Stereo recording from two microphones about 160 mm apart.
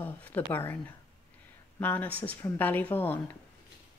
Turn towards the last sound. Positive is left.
turn(degrees=15)  # may be behind; listen again after turning